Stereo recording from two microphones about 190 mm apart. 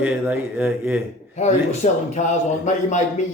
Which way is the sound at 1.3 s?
35° left (ahead or behind).